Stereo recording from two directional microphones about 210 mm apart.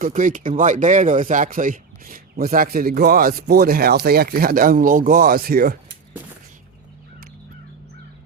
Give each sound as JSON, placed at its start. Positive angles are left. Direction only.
{"t": 0.0, "sound": "speech", "side_deg": -40}